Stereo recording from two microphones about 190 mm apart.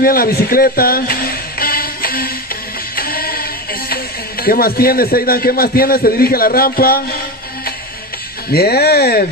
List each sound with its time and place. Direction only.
0.0 s speech: 50° left (ahead or behind)
3.0 s music: 50° left (ahead or behind)
3.9 s a man's voice: 50° left (ahead or behind)
8.5 s speech: 55° left (ahead or behind)